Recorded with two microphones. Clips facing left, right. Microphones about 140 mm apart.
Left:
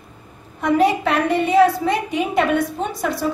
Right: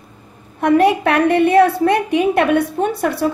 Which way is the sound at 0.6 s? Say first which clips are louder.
Right 4 dB; 65° right (ahead or behind).